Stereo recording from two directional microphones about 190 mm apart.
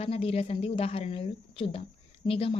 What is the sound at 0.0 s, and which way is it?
A woman's voice, 30° left (ahead or behind).